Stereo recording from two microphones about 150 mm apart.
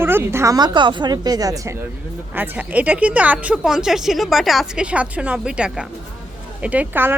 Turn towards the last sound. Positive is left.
turn(degrees=-15)  # may be behind; listen again after turning